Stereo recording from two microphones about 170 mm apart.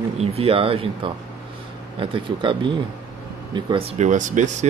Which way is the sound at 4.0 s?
45° right (ahead or behind).